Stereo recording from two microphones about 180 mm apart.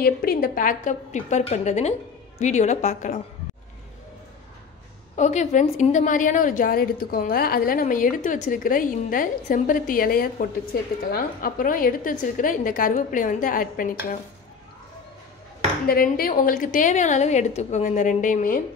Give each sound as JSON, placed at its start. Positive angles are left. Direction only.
{"t": 0.0, "sound": "a woman's voice", "side_deg": 55}
{"t": 5.1, "sound": "a woman's voice", "side_deg": 40}
{"t": 15.9, "sound": "a woman's voice", "side_deg": 50}